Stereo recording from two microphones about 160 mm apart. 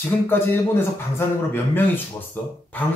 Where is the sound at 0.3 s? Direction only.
10° left (ahead or behind).